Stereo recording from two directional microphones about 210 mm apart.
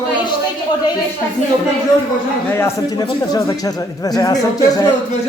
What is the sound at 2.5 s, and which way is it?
A man's voice, 10° left (ahead or behind).